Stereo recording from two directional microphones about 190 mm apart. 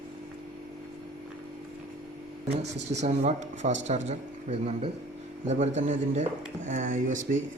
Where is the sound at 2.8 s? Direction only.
35° right (ahead or behind).